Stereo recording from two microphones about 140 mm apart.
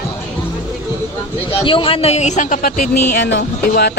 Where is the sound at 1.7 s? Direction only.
40° left (ahead or behind); by 2.8 s 70° left (ahead or behind).